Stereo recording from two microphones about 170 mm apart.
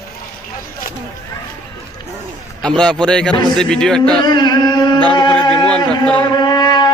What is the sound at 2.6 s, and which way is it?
A man's voice, 5° left (ahead or behind).